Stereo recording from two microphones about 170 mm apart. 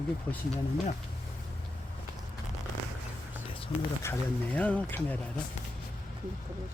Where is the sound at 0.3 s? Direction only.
10° left (ahead or behind).